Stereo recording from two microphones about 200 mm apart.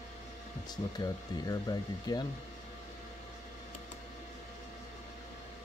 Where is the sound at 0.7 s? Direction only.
20° left (ahead or behind).